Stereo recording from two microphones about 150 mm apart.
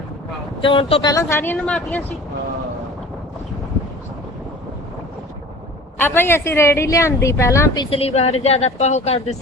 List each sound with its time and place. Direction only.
0.6 s speech: 35° left (ahead or behind)
1.1 s a woman's voice: 15° left (ahead or behind)
6.0 s a woman's voice: 15° left (ahead or behind)
7.9 s a woman's voice: 40° left (ahead or behind)